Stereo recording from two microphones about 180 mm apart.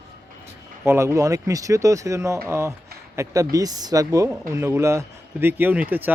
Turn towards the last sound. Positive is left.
turn(degrees=-10)  # may be behind; listen again after turning